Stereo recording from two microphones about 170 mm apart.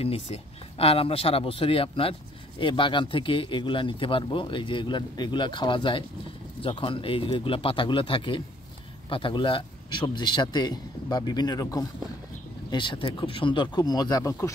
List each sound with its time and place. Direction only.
0.0 s speech: 35° left (ahead or behind)